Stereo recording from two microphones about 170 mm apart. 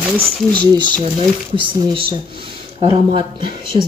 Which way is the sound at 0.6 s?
25° right (ahead or behind).